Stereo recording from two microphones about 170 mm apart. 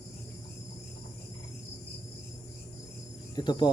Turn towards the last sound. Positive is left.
turn(degrees=25)  # may be behind; listen again after turning